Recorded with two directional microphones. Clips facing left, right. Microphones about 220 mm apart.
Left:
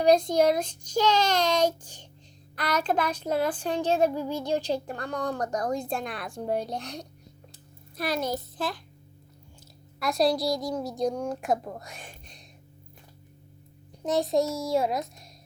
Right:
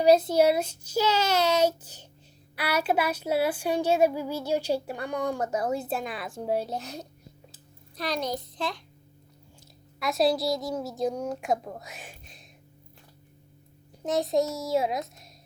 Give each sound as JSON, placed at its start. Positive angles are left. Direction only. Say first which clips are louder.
{"t": 0.0, "sound": "speech", "louder": "right 1 dB", "side_deg": -5}
{"t": 7.9, "sound": "a woman's voice", "louder": "left 1 dB", "side_deg": 5}
{"t": 10.0, "sound": "a woman's voice", "louder": "even", "side_deg": 0}
{"t": 14.0, "sound": "a woman's voice", "louder": "left 1 dB", "side_deg": 0}